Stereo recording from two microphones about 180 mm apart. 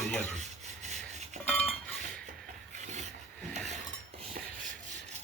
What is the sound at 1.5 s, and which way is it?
Cutlery, 35° left (ahead or behind).